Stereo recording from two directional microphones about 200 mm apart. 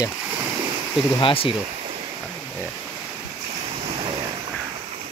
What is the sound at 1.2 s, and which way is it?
Speech, 25° left (ahead or behind).